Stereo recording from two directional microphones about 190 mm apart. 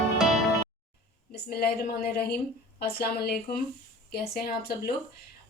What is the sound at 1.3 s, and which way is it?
A woman's voice, 55° left (ahead or behind).